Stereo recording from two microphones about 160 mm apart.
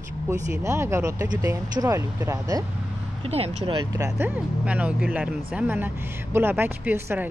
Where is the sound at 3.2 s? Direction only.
40° right (ahead or behind).